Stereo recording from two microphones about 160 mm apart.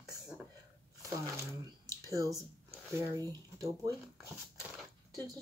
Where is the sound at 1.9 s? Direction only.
20° right (ahead or behind).